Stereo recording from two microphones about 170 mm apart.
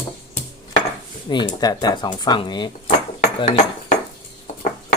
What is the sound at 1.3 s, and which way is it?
A woman's voice, 25° left (ahead or behind).